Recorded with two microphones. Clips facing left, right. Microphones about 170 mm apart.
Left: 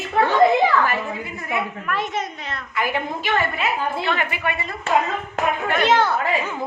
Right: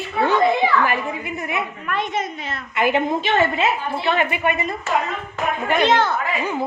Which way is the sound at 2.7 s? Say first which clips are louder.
Right 6 dB; 25° right (ahead or behind).